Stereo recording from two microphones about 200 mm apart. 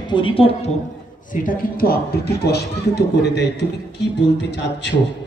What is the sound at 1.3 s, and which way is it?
A man's voice, 45° left (ahead or behind).